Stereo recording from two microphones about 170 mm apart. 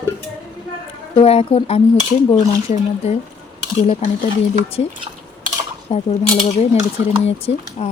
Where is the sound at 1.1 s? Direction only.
35° left (ahead or behind).